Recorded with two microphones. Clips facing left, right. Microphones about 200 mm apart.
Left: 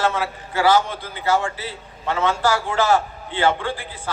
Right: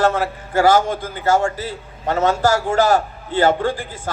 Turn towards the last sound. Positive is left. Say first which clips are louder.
# right 6 dB
turn(degrees=-45)  # may be behind; listen again after turning